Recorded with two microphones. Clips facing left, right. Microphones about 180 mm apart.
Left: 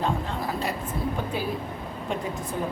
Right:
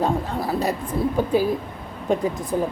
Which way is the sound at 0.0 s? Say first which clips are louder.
Right 5 dB; 40° right (ahead or behind).